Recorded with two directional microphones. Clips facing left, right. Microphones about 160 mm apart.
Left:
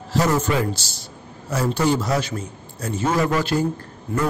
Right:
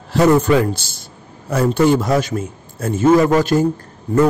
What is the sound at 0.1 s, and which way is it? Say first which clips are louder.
A man's voice: right 7 dB; 60° right (ahead or behind).